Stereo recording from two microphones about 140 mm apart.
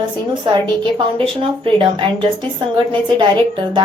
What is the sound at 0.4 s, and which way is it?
A woman's voice, 35° right (ahead or behind).